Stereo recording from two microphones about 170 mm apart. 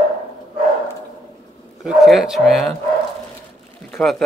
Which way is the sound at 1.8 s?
Centre (ahead or behind).